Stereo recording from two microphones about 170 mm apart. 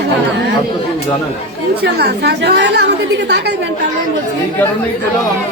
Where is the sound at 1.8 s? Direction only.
75° right (ahead or behind).